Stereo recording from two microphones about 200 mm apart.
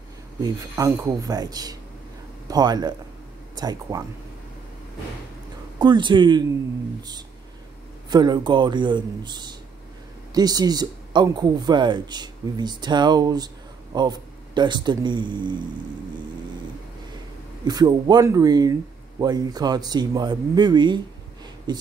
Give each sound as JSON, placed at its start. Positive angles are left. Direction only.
{"t": 0.4, "sound": "speech", "side_deg": -15}
{"t": 5.8, "sound": "speech", "side_deg": -20}
{"t": 17.6, "sound": "speech", "side_deg": -20}